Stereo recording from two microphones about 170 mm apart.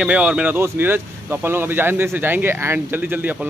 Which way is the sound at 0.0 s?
5° right (ahead or behind).